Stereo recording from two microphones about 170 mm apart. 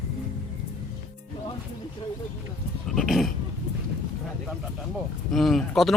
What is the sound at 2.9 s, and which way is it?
Goat, centre (ahead or behind).